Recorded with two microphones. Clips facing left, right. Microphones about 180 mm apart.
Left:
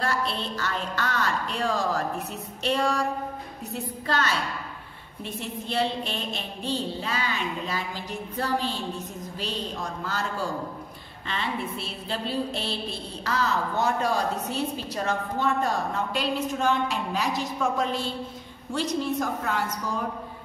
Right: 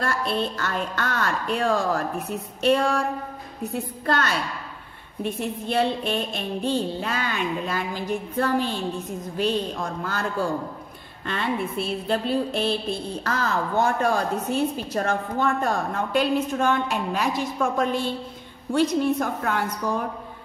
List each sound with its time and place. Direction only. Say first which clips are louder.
0.0 s a woman's voice: right 3 dB; 50° right (ahead or behind)
4.0 s a woman's voice: right 2 dB; 55° right (ahead or behind)
11.2 s a woman's voice: right 4 dB; 55° right (ahead or behind)